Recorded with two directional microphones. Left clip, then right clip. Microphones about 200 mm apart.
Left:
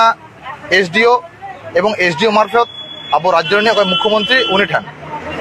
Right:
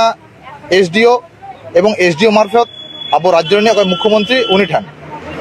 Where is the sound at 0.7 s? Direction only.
60° right (ahead or behind).